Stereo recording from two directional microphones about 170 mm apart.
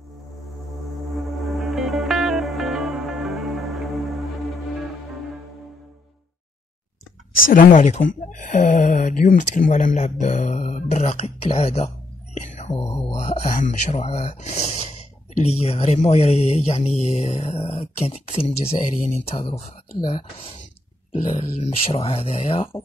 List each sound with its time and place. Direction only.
0.9 s music: centre (ahead or behind)
7.5 s speech: 45° left (ahead or behind)
21.1 s speech: 40° left (ahead or behind)